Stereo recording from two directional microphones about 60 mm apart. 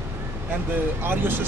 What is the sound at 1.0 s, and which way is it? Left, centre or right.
Speech, right.